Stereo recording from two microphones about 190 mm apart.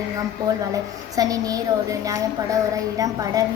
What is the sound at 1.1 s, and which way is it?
A child's voice, 20° right (ahead or behind).